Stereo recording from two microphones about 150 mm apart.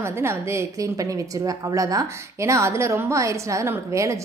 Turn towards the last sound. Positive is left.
turn(degrees=-20)  # may be behind; listen again after turning